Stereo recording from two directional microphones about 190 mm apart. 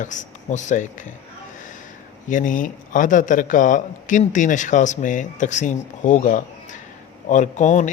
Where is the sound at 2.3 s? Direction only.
45° left (ahead or behind).